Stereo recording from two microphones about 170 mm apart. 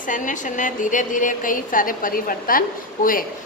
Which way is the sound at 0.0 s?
50° left (ahead or behind).